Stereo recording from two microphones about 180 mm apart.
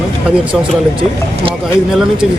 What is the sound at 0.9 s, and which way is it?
Speech, 30° right (ahead or behind).